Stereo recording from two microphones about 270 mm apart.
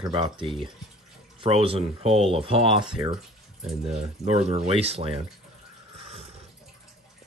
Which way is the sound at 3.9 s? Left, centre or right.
Right.